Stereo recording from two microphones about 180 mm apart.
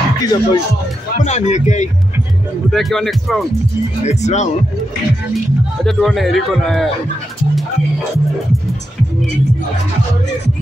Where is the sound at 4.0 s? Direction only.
40° left (ahead or behind).